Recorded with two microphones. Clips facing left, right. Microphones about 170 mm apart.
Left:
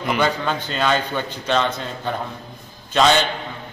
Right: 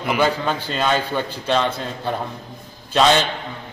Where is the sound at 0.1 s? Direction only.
5° right (ahead or behind).